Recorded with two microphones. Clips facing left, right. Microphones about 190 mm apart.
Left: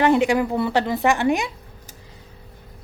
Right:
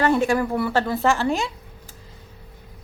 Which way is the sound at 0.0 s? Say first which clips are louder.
Left 2 dB; 15° left (ahead or behind).